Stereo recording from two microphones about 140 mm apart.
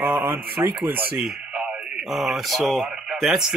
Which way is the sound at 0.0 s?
15° right (ahead or behind).